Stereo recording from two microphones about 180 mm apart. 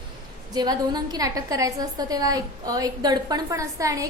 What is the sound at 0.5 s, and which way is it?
A woman's voice, 20° right (ahead or behind).